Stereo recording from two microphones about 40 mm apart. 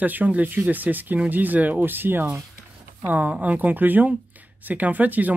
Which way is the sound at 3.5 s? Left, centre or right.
Right.